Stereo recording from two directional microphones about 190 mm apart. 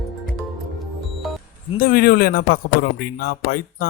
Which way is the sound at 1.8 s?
50° left (ahead or behind).